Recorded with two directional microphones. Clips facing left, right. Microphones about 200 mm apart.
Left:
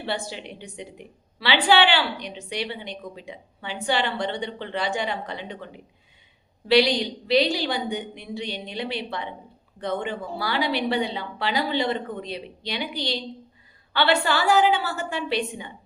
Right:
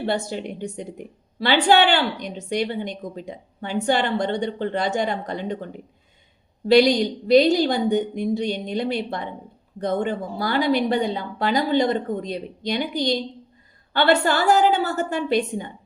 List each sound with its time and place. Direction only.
0.0 s a woman's voice: 45° right (ahead or behind)